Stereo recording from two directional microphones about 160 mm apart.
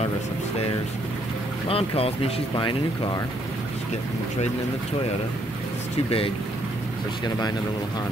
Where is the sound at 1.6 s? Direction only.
35° left (ahead or behind).